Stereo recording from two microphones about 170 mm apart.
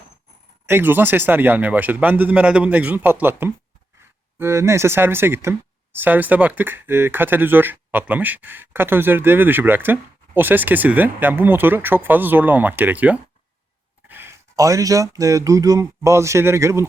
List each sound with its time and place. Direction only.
0.7 s speech: 10° right (ahead or behind)